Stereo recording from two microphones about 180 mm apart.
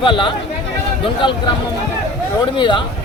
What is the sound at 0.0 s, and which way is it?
Speech, 25° left (ahead or behind).